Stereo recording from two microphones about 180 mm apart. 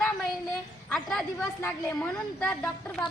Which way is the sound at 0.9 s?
5° left (ahead or behind).